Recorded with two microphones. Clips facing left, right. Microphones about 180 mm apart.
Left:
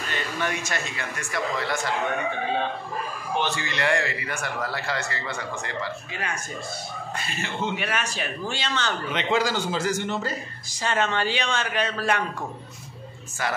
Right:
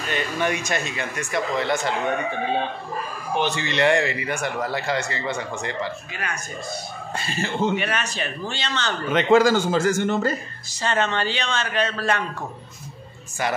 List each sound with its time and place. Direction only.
0.1 s a man's voice: 15° right (ahead or behind)
3.3 s a man's voice: 20° right (ahead or behind)
7.2 s speech: 35° right (ahead or behind)
7.7 s speech: 5° left (ahead or behind)
9.1 s speech: 45° right (ahead or behind)
10.8 s speech: 10° left (ahead or behind)